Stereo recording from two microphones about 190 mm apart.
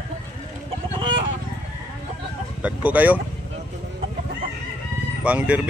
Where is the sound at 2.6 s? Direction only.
10° right (ahead or behind).